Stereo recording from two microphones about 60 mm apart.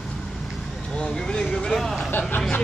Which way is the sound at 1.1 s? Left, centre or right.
Centre.